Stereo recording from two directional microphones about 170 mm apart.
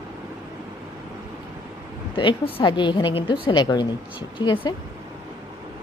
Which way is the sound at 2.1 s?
30° left (ahead or behind).